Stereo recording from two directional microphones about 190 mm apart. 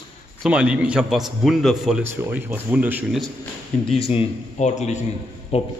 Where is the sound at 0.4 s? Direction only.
5° right (ahead or behind).